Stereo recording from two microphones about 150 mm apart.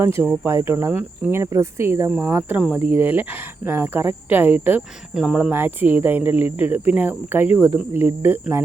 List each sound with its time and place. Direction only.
0.0 s speech: 15° right (ahead or behind)